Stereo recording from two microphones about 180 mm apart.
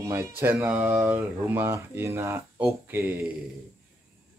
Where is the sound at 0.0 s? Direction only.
15° right (ahead or behind).